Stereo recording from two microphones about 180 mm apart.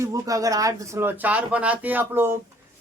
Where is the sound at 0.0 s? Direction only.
20° right (ahead or behind).